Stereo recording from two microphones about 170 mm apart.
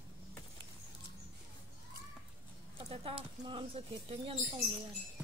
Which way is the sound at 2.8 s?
35° right (ahead or behind).